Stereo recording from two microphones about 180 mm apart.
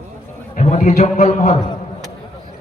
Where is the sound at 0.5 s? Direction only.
40° left (ahead or behind).